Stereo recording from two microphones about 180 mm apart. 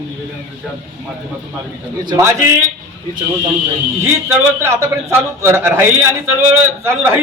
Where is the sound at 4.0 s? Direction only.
15° right (ahead or behind).